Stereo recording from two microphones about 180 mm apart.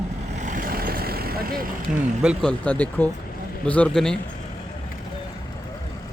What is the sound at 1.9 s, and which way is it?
Speech, 5° right (ahead or behind).